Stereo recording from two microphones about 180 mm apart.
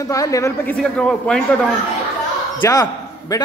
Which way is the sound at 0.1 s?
20° left (ahead or behind).